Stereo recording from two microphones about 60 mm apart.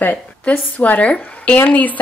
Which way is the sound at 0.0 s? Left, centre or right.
Left.